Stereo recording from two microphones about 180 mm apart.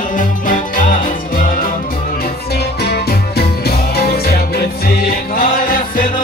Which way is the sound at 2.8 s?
60° left (ahead or behind).